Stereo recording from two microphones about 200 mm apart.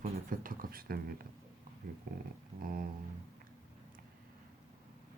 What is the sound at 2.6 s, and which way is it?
Speech, 45° right (ahead or behind).